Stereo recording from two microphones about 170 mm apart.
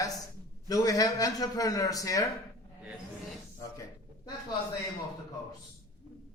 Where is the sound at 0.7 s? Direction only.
20° left (ahead or behind).